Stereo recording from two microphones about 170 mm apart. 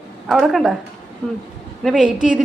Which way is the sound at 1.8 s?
Centre (ahead or behind).